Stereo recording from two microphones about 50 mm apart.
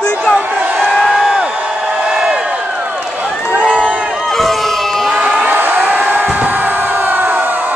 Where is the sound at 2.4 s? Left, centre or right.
Right.